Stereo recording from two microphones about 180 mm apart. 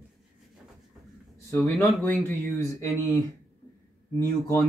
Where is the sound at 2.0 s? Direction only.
15° left (ahead or behind).